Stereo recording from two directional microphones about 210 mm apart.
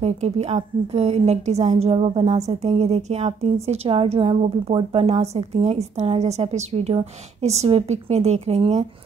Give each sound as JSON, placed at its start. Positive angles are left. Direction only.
{"t": 0.0, "sound": "a woman's voice", "side_deg": -30}